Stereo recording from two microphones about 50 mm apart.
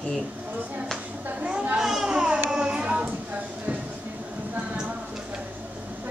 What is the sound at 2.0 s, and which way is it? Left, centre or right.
Music, centre.